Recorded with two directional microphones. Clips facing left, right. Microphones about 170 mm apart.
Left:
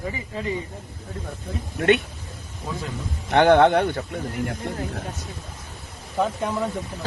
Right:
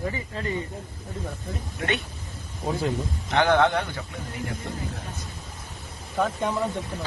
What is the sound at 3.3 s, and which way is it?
Speech, 60° left (ahead or behind).